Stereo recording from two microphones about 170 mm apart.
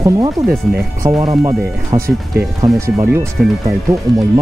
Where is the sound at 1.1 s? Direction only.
Centre (ahead or behind).